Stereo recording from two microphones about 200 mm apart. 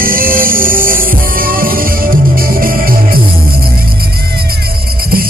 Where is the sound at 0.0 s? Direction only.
45° right (ahead or behind).